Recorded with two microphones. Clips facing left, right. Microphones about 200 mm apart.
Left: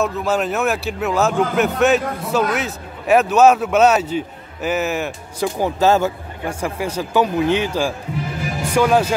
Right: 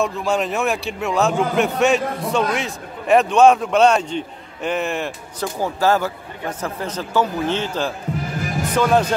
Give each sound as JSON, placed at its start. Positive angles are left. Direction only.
{"t": 0.0, "sound": "a man's voice", "side_deg": 0}
{"t": 5.6, "sound": "speech", "side_deg": 20}
{"t": 6.6, "sound": "a man's voice", "side_deg": 10}